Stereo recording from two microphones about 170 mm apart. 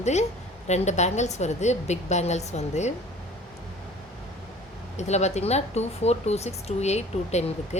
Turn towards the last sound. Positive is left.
turn(degrees=40)  # may be behind; listen again after turning